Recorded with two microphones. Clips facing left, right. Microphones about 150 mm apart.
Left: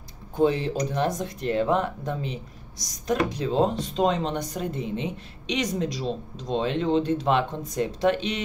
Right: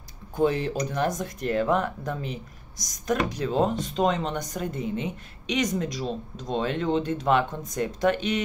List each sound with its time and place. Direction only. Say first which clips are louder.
0.4 s speech: left 1 dB; 30° left (ahead or behind)